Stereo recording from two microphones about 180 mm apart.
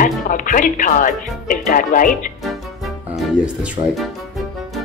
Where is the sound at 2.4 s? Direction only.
Centre (ahead or behind).